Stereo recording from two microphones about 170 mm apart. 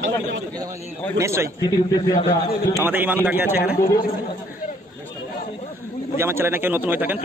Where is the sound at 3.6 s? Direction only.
70° left (ahead or behind).